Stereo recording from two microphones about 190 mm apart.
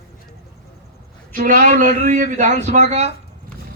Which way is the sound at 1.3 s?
45° right (ahead or behind).